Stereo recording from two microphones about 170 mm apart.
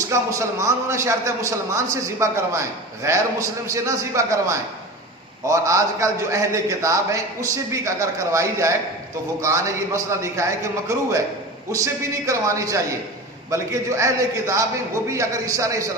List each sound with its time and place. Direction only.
0.1 s a man's voice: 15° right (ahead or behind)